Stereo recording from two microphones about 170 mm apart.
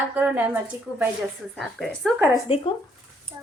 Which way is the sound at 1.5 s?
5° left (ahead or behind).